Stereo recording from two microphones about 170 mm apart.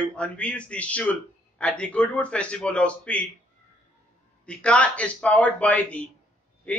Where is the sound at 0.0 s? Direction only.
10° left (ahead or behind).